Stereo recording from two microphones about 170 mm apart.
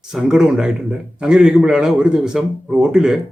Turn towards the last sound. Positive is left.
turn(degrees=-5)  # may be behind; listen again after turning